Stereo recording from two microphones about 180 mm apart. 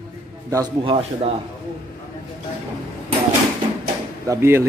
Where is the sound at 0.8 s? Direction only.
35° right (ahead or behind).